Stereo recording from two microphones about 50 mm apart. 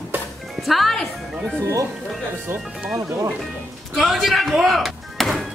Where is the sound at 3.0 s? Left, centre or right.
Right.